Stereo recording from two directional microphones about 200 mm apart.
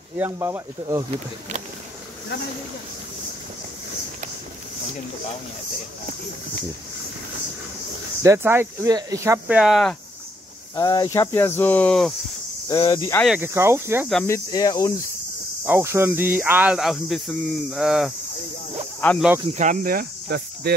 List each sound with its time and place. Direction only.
0.2 s speech: 10° right (ahead or behind)
8.2 s speech: 15° right (ahead or behind)
10.8 s speech: 20° left (ahead or behind)
12.6 s speech: 20° left (ahead or behind)
13.1 s speech: centre (ahead or behind)
13.4 s speech: 10° right (ahead or behind)
14.2 s speech: 15° left (ahead or behind)
15.6 s speech: 10° right (ahead or behind); by 19.2 s 10° left (ahead or behind)
19.5 s speech: 40° right (ahead or behind)